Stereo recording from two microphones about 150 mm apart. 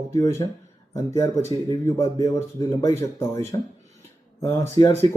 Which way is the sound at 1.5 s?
20° left (ahead or behind).